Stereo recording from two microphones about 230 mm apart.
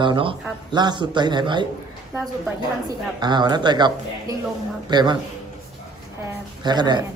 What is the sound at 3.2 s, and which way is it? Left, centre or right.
A man's voice, centre.